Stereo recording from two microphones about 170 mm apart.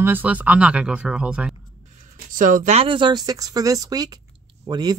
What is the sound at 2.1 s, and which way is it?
Speech, 50° right (ahead or behind).